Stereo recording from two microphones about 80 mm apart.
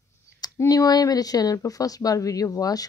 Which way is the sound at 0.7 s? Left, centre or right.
Left.